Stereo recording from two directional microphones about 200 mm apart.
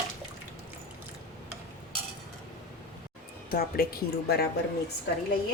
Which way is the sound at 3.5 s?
50° left (ahead or behind).